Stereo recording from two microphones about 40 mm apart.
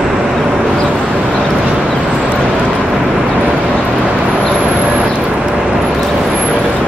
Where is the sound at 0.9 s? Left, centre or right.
Right.